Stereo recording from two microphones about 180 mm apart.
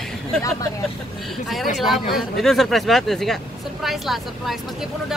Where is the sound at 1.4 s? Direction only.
Centre (ahead or behind).